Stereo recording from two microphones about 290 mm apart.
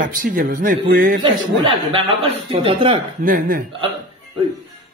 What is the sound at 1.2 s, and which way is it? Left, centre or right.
Speech, centre.